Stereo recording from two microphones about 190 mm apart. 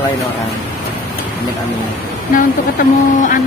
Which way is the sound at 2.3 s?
45° left (ahead or behind).